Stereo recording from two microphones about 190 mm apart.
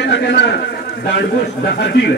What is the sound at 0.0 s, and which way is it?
A man's voice, 65° left (ahead or behind).